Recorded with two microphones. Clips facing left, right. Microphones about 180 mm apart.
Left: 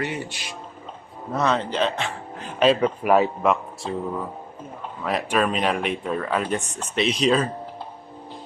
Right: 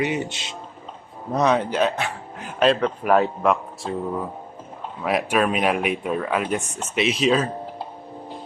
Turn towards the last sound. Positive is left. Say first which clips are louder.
# even
turn(degrees=-5)  # may be behind; listen again after turning